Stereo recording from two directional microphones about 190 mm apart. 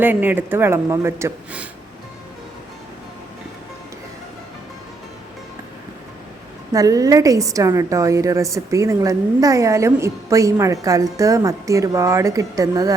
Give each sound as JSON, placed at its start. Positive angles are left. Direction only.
{"t": 0.0, "sound": "a woman's voice", "side_deg": -10}
{"t": 6.7, "sound": "a woman's voice", "side_deg": -20}